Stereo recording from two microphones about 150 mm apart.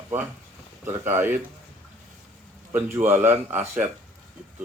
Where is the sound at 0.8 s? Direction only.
15° right (ahead or behind).